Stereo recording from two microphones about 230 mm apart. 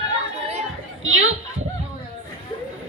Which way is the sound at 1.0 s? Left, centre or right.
Right.